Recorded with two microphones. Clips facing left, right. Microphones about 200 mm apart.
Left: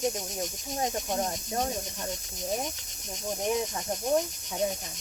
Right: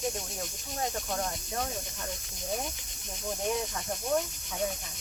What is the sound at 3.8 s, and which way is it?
Speech, 25° left (ahead or behind).